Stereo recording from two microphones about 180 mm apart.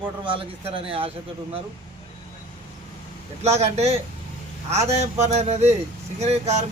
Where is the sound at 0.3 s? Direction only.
30° right (ahead or behind).